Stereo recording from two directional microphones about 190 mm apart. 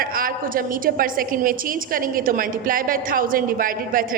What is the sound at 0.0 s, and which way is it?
A woman's voice, 50° right (ahead or behind).